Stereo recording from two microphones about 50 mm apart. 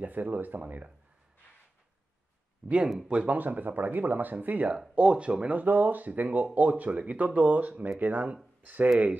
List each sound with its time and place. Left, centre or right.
0.0 s speech: right
2.6 s speech: centre
3.1 s speech: right
3.3 s speech: right
5.5 s speech: right